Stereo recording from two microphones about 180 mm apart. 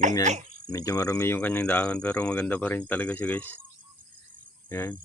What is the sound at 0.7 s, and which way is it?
Speech, 20° left (ahead or behind).